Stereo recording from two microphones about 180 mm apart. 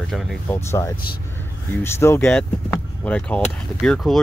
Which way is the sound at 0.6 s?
15° left (ahead or behind).